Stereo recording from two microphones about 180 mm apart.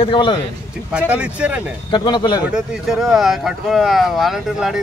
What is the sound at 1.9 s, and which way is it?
Speech, 25° left (ahead or behind).